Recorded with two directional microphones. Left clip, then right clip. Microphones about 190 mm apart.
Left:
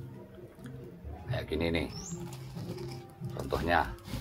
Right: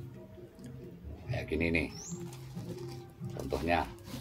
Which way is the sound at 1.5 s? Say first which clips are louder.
Even; 10° right (ahead or behind).